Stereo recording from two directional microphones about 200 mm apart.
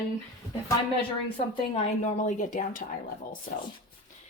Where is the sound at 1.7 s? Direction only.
35° left (ahead or behind).